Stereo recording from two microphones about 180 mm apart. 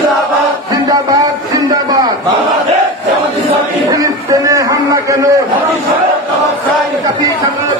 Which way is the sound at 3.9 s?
20° right (ahead or behind).